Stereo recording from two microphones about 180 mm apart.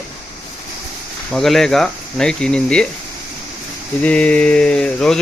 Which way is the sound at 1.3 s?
Centre (ahead or behind).